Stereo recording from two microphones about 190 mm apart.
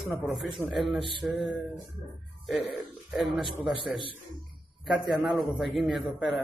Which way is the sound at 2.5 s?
Centre (ahead or behind).